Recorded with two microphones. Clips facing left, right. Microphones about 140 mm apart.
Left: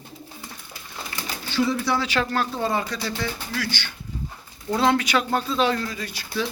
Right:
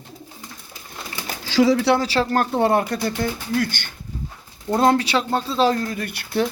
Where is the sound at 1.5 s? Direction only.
90° right.